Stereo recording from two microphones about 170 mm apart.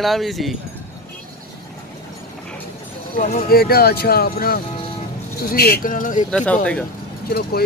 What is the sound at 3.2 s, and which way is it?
Speech, 60° left (ahead or behind).